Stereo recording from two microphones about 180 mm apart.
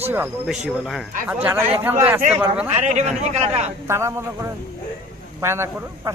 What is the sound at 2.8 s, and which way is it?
Speech, 40° right (ahead or behind).